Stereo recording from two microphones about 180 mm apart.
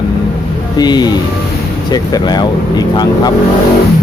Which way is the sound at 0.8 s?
25° left (ahead or behind).